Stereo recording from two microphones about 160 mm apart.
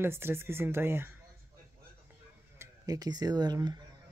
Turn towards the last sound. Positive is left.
turn(degrees=-25)  # may be behind; listen again after turning